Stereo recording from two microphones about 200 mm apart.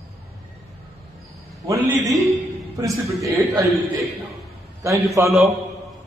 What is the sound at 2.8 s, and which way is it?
Speech, 15° right (ahead or behind).